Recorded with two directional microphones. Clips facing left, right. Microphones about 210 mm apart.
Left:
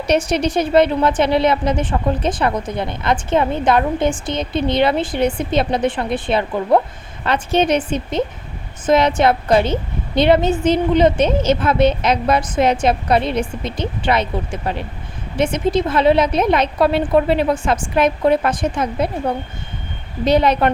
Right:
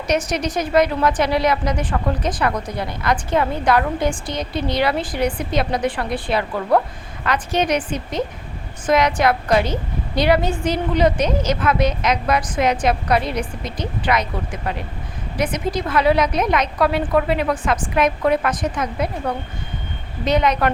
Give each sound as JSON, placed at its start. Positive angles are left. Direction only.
{"t": 0.1, "sound": "a woman's voice", "side_deg": 30}
{"t": 20.2, "sound": "a woman's voice", "side_deg": 30}